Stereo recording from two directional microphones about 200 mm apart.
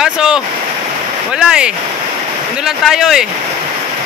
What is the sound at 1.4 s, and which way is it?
Speech, 5° right (ahead or behind).